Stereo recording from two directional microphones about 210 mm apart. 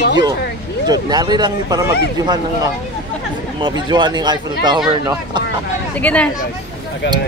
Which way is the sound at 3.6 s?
20° right (ahead or behind).